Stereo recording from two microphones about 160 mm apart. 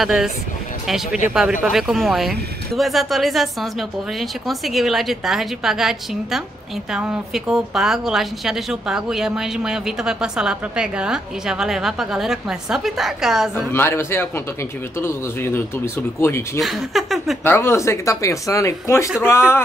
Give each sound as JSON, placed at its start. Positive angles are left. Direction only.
{"t": 0.0, "sound": "a woman's voice", "side_deg": 0}
{"t": 13.7, "sound": "speech", "side_deg": 15}
{"t": 16.5, "sound": "a woman's voice", "side_deg": 0}
{"t": 17.4, "sound": "speech", "side_deg": 15}